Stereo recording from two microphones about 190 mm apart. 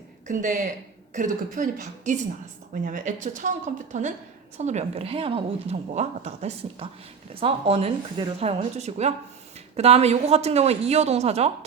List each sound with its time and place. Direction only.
0.3 s a woman's voice: 40° right (ahead or behind)